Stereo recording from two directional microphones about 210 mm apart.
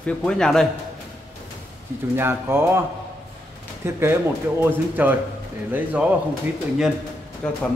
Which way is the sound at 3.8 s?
10° right (ahead or behind).